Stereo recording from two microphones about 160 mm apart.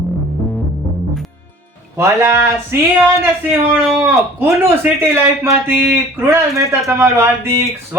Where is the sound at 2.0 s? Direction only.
15° right (ahead or behind).